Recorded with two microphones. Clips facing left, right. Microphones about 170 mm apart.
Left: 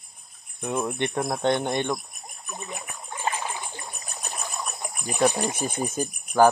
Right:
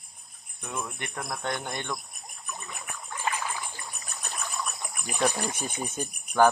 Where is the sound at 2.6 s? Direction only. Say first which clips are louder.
Left 8 dB; 20° left (ahead or behind).